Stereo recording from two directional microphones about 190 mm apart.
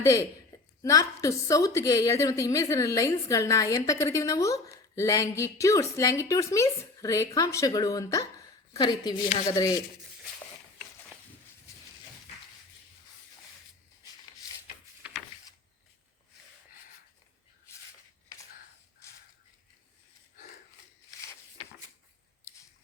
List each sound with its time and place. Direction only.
0.0 s a woman's voice: 15° left (ahead or behind)